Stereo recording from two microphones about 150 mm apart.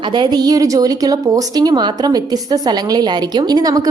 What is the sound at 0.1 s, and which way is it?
A woman's voice, 30° right (ahead or behind).